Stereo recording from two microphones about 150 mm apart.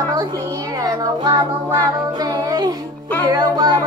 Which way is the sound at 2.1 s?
25° right (ahead or behind).